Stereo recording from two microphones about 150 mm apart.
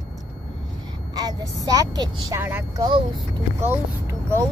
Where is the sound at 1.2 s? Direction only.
25° right (ahead or behind).